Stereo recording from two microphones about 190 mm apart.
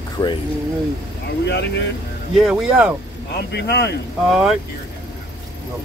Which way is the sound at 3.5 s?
60° left (ahead or behind).